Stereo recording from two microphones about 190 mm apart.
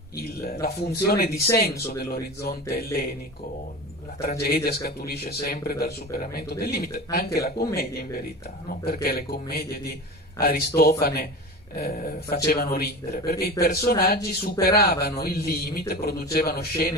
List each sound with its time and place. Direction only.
0.4 s speech: 55° left (ahead or behind)
4.2 s speech: 55° left (ahead or behind)